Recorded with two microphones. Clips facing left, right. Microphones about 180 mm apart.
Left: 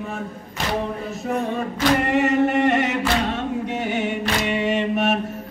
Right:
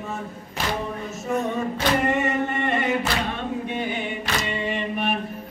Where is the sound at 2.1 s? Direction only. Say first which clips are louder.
Left 5 dB; 75° left (ahead or behind).